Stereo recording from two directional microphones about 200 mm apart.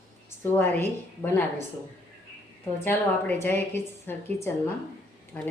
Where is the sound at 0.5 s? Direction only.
10° left (ahead or behind).